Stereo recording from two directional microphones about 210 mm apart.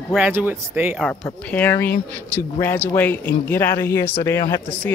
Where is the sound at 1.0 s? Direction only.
5° left (ahead or behind).